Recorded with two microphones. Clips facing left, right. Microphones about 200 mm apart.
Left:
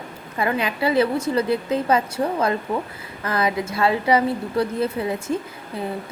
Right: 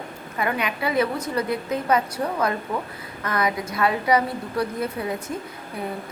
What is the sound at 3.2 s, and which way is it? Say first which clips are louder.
A woman's voice: left 2 dB; 30° left (ahead or behind).